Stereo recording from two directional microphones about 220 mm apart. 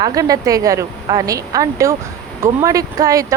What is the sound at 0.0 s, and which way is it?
Speech, 15° right (ahead or behind).